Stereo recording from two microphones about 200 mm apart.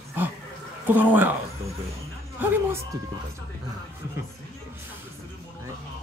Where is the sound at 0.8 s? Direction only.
10° right (ahead or behind).